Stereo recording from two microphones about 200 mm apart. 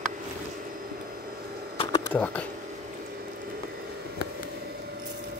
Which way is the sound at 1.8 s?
20° left (ahead or behind).